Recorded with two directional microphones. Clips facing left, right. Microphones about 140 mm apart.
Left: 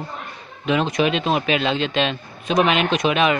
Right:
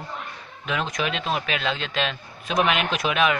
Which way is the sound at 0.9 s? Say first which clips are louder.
Left 7 dB; centre (ahead or behind).